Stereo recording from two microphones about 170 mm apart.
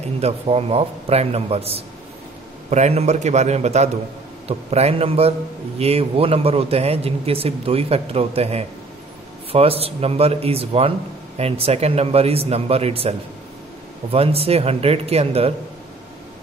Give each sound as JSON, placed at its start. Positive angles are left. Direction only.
{"t": 0.2, "sound": "speech", "side_deg": -35}
{"t": 14.1, "sound": "speech", "side_deg": -35}